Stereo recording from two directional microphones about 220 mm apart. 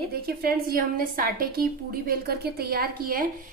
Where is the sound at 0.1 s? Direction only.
45° right (ahead or behind).